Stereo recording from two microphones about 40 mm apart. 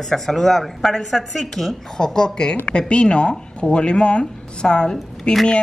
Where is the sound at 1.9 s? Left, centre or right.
Centre.